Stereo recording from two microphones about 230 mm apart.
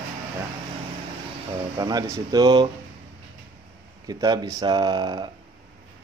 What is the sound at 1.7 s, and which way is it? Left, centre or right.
Speech, centre.